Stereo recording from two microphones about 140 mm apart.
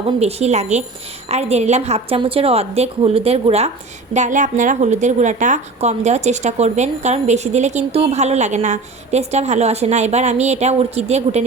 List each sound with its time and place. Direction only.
0.2 s a woman's voice: 50° right (ahead or behind)
4.1 s a woman's voice: 60° right (ahead or behind)